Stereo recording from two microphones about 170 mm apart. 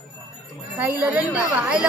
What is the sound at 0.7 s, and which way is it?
A woman's voice, 10° right (ahead or behind).